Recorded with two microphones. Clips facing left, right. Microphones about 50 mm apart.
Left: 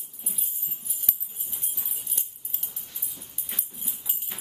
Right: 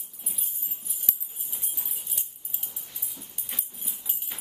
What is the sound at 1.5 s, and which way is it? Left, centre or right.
Music, centre.